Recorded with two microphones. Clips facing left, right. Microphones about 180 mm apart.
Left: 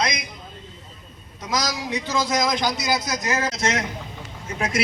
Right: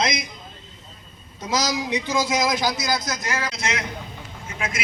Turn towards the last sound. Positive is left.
turn(degrees=40)  # may be behind; listen again after turning